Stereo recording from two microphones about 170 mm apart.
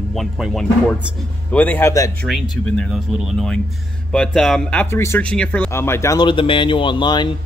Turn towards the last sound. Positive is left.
turn(degrees=25)  # may be behind; listen again after turning